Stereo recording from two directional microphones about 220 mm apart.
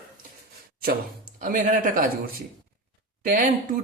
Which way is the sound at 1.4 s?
35° right (ahead or behind).